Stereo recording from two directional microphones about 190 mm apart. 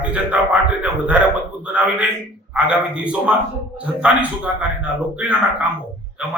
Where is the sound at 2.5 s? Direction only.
5° right (ahead or behind).